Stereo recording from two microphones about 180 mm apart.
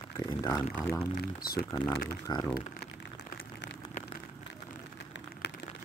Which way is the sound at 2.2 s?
20° left (ahead or behind).